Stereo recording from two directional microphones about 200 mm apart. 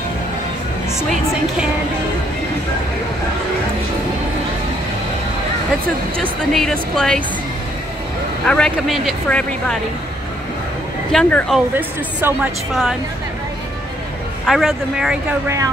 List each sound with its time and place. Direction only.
0.9 s speech: centre (ahead or behind)
6.5 s speech: centre (ahead or behind)
8.5 s speech: 5° left (ahead or behind)
11.1 s speech: centre (ahead or behind)
11.7 s a woman's voice: 10° right (ahead or behind)
14.4 s speech: centre (ahead or behind)
15.4 s a woman's voice: 15° right (ahead or behind)